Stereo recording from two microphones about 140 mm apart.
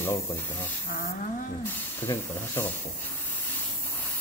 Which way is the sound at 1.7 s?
15° left (ahead or behind).